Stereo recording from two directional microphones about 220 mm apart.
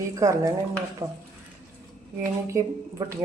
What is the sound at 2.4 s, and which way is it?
Speech, 15° right (ahead or behind).